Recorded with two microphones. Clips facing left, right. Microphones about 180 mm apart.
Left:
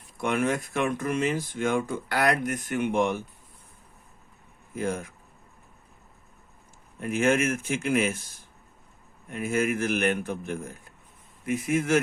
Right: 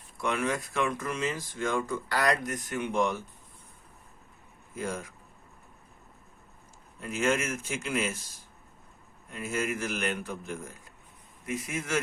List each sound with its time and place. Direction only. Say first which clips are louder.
0.2 s speech: left 4 dB; 55° left (ahead or behind)
4.7 s speech: left 5 dB; 55° left (ahead or behind)
7.0 s speech: left 5 dB; 55° left (ahead or behind)
9.3 s speech: left 6 dB; 55° left (ahead or behind)